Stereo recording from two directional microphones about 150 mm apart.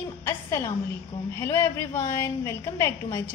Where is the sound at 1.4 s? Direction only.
15° left (ahead or behind).